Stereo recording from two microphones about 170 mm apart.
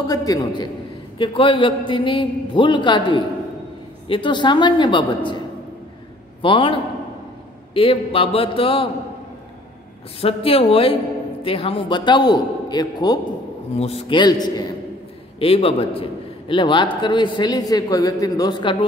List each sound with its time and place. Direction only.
0.1 s a man's voice: 20° left (ahead or behind)
6.4 s a man's voice: 30° left (ahead or behind)
10.2 s a man's voice: 35° left (ahead or behind)
13.7 s a man's voice: 35° left (ahead or behind)
15.3 s a man's voice: 35° left (ahead or behind)